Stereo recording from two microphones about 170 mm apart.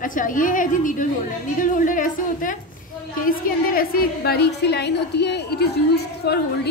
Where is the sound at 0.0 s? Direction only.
50° left (ahead or behind).